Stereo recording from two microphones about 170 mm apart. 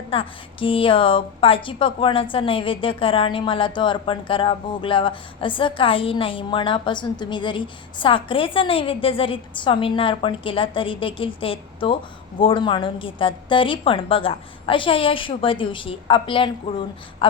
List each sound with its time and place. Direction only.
0.1 s a woman's voice: 30° left (ahead or behind)